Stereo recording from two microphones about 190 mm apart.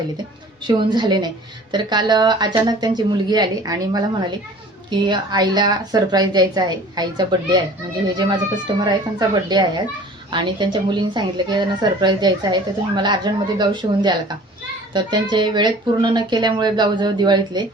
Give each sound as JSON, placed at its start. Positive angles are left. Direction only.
{"t": 0.7, "sound": "a woman's voice", "side_deg": -25}